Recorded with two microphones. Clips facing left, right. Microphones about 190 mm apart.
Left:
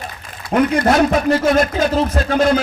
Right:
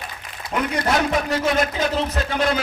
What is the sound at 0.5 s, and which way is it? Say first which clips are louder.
Speech: left 9 dB; 45° left (ahead or behind).